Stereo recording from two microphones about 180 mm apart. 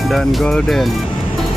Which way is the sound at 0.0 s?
Centre (ahead or behind).